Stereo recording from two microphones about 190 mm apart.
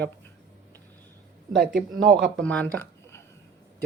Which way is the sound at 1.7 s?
70° right (ahead or behind).